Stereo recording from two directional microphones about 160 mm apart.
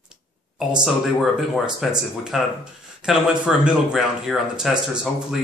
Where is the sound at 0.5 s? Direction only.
5° right (ahead or behind).